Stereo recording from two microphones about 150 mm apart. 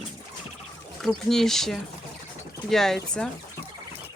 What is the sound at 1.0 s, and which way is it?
Speech, centre (ahead or behind).